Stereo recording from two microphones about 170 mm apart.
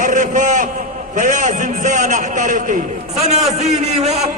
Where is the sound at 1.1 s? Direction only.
50° right (ahead or behind).